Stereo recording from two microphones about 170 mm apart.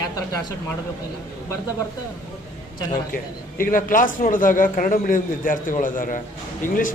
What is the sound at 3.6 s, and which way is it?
A man's voice, 55° left (ahead or behind).